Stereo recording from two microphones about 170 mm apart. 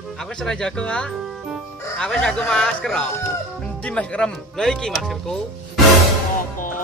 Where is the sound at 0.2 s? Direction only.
5° left (ahead or behind).